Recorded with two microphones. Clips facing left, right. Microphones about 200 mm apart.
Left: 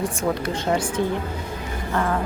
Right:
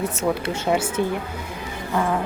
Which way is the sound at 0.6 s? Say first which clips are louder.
Right 1 dB; 5° right (ahead or behind).